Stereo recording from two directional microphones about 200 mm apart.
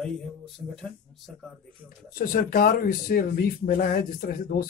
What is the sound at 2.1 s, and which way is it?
Speech, 45° left (ahead or behind).